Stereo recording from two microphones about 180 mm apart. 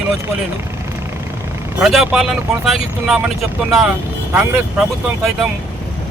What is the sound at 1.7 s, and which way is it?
Speech, centre (ahead or behind).